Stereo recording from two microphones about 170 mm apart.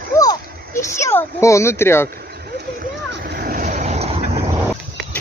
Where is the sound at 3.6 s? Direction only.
45° right (ahead or behind).